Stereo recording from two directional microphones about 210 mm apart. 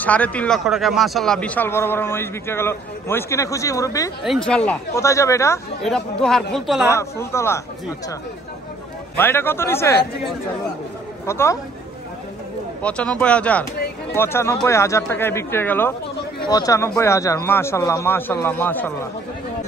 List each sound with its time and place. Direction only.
0.0 s speech: 5° left (ahead or behind)
4.2 s speech: centre (ahead or behind)
5.9 s speech: centre (ahead or behind)
6.9 s speech: 15° left (ahead or behind)
9.1 s speech: 10° left (ahead or behind)
11.2 s speech: 15° left (ahead or behind)
12.8 s speech: 5° left (ahead or behind)